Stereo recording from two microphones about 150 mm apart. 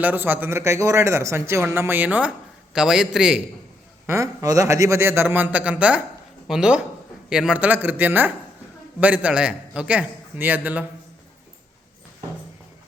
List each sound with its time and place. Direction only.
0.0 s a man's voice: 10° right (ahead or behind)
4.0 s a man's voice: 20° right (ahead or behind)